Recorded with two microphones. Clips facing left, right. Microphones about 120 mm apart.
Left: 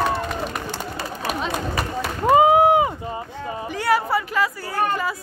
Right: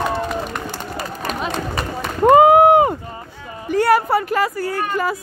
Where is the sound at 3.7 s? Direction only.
50° right (ahead or behind).